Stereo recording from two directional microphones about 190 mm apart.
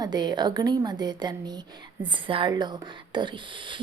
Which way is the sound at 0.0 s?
20° right (ahead or behind).